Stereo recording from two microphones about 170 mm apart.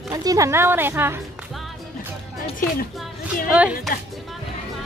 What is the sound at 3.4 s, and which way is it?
Speech, 5° right (ahead or behind).